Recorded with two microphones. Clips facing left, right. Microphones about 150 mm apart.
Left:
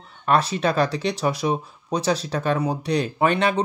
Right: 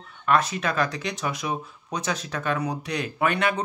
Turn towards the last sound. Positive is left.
turn(degrees=30)  # may be behind; listen again after turning